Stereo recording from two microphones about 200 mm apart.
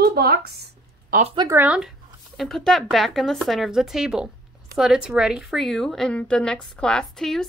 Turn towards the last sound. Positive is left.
turn(degrees=0)  # may be behind; listen again after turning